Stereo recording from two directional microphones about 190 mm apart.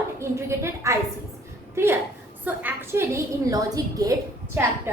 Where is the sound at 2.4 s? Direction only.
10° right (ahead or behind).